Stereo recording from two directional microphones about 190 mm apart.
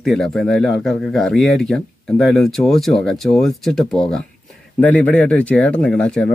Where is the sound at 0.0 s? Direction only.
Centre (ahead or behind).